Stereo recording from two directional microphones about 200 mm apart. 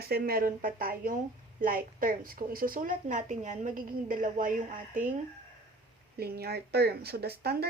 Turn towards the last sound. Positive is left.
turn(degrees=-50)  # may be behind; listen again after turning